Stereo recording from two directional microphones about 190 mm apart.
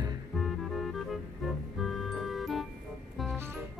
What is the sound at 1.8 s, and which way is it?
Music, centre (ahead or behind).